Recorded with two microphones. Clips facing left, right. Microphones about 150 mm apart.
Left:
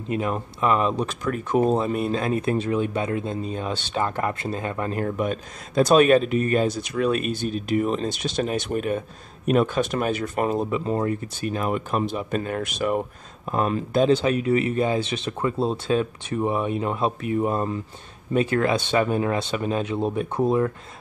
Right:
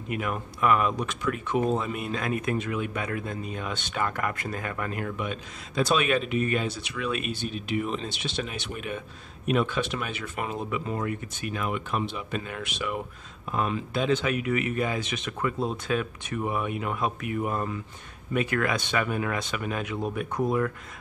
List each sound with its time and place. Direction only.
0.1 s speech: 30° left (ahead or behind)